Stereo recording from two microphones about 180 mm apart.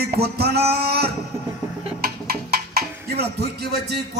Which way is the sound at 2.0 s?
60° right (ahead or behind).